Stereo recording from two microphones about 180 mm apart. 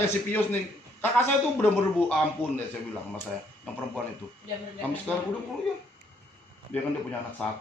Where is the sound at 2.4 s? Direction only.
35° left (ahead or behind).